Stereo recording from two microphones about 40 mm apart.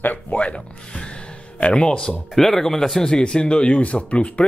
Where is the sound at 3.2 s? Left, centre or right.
Left.